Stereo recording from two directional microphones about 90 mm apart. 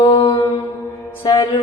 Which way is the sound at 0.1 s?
70° left (ahead or behind).